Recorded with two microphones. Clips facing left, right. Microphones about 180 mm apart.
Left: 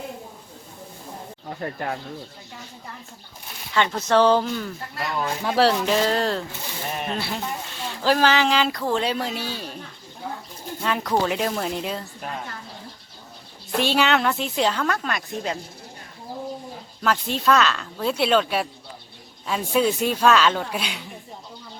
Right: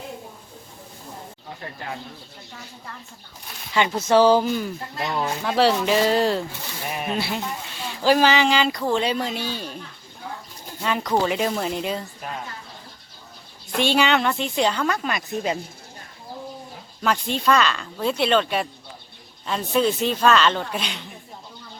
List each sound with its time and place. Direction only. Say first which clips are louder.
3.8 s speech: right 2 dB; 10° right (ahead or behind)
4.9 s speech: right 1 dB; 20° right (ahead or behind)
5.4 s a woman's voice: even; centre (ahead or behind)
10.8 s a woman's voice: right 1 dB; centre (ahead or behind)
13.7 s a woman's voice: right 1 dB; centre (ahead or behind)
17.0 s a woman's voice: even; centre (ahead or behind)